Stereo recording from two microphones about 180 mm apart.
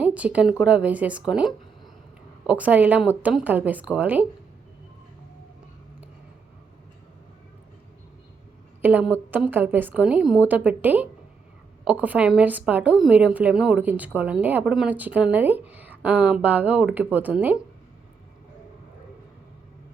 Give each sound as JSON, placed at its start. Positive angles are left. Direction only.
{"t": 0.0, "sound": "a woman's voice", "side_deg": -5}
{"t": 8.8, "sound": "a woman's voice", "side_deg": -10}